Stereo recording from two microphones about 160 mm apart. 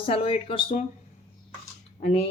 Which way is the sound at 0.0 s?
35° left (ahead or behind).